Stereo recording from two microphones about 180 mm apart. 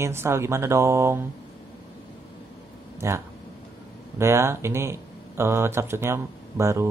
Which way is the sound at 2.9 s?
15° right (ahead or behind).